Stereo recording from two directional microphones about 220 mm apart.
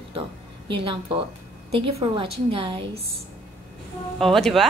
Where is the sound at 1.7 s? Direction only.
25° right (ahead or behind).